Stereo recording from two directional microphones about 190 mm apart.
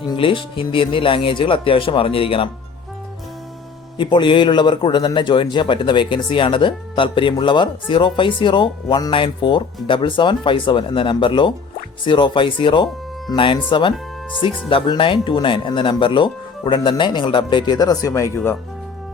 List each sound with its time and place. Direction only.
0.2 s a man's voice: 25° left (ahead or behind)
3.9 s a man's voice: 25° left (ahead or behind)